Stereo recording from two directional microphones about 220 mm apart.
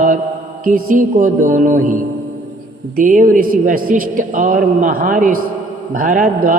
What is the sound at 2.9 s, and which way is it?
Mantra, 35° right (ahead or behind).